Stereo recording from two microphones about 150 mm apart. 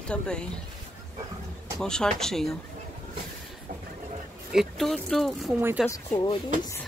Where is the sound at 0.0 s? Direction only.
5° left (ahead or behind).